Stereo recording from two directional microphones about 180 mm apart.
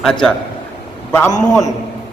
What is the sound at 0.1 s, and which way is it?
Speech, 5° left (ahead or behind).